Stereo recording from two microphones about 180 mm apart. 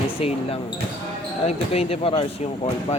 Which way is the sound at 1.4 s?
35° left (ahead or behind).